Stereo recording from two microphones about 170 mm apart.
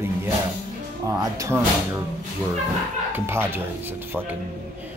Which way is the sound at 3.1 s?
15° right (ahead or behind).